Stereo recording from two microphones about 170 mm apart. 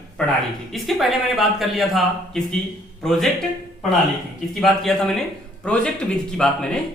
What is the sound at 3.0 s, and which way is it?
Speech, centre (ahead or behind).